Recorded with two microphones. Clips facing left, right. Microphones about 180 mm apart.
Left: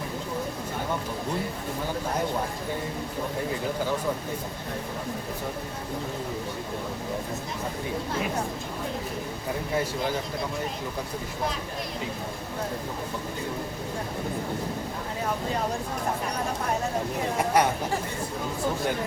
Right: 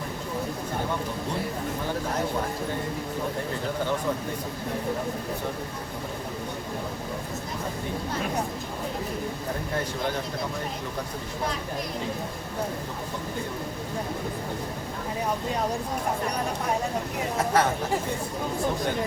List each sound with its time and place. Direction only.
17.3 s speech: 15° left (ahead or behind)